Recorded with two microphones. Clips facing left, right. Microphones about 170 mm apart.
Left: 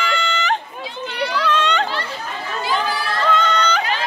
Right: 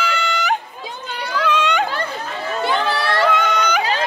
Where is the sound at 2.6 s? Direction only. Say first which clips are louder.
Right 2 dB; 65° right (ahead or behind).